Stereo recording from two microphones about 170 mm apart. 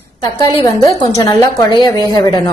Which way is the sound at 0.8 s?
20° left (ahead or behind).